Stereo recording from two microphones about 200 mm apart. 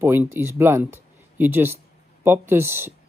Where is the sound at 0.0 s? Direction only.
10° right (ahead or behind).